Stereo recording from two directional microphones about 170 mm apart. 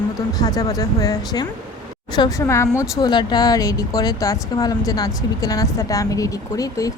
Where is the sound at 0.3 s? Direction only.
20° left (ahead or behind).